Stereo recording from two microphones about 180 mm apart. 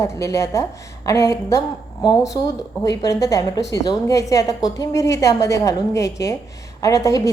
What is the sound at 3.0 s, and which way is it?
A woman's voice, 15° left (ahead or behind).